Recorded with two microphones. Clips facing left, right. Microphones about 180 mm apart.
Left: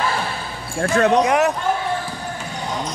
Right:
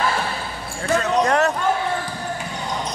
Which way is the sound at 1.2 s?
10° left (ahead or behind).